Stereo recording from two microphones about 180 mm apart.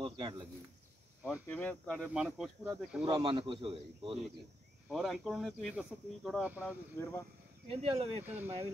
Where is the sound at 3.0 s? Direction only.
30° right (ahead or behind).